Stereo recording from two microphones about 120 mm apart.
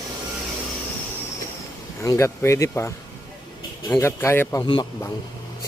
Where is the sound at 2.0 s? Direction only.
25° left (ahead or behind).